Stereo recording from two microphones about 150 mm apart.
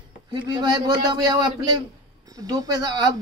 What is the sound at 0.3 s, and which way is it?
Speech, 30° right (ahead or behind).